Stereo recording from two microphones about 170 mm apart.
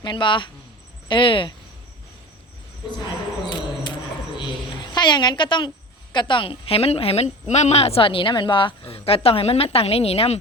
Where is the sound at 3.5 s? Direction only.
25° left (ahead or behind).